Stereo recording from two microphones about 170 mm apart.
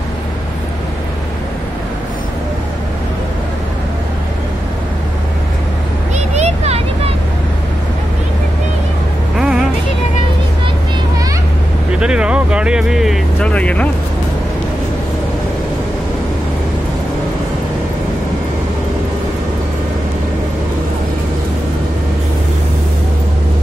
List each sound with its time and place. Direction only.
6.1 s a sound: 40° right (ahead or behind)
9.4 s vehicle: 5° right (ahead or behind)
12.0 s music: 5° right (ahead or behind)